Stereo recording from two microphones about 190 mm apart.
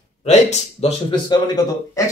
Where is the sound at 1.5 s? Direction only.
20° left (ahead or behind).